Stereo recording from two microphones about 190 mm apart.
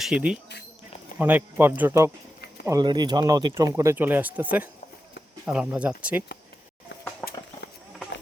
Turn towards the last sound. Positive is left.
turn(degrees=0)  # may be behind; listen again after turning